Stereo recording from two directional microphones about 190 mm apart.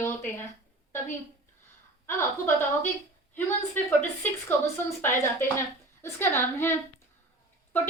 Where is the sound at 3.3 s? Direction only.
10° left (ahead or behind).